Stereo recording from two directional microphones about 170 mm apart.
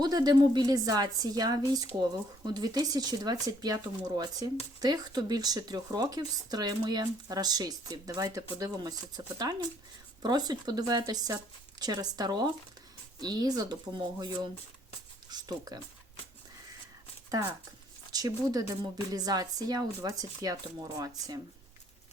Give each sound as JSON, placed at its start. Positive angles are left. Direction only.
{"t": 0.0, "sound": "speech", "side_deg": -25}
{"t": 18.1, "sound": "speech", "side_deg": -20}